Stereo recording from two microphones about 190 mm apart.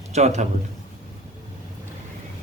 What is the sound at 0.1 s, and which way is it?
Speech, 35° right (ahead or behind).